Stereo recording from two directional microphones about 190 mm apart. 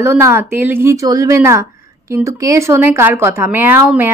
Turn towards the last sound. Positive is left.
turn(degrees=-10)  # may be behind; listen again after turning